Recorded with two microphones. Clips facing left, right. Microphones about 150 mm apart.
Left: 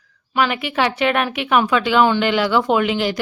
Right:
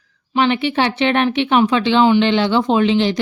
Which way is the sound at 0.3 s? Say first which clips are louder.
Right 3 dB; 30° right (ahead or behind).